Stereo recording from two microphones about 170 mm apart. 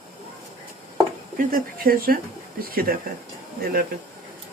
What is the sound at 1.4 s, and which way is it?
Speech, 55° right (ahead or behind).